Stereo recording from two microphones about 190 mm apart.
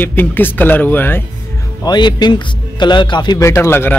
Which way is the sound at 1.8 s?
25° left (ahead or behind).